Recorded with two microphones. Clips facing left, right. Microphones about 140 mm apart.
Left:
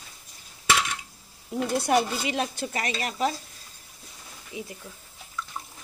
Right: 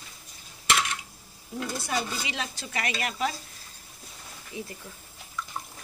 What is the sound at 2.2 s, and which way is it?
Speech, 50° left (ahead or behind).